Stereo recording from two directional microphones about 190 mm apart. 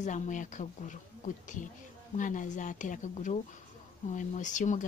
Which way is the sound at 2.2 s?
40° left (ahead or behind).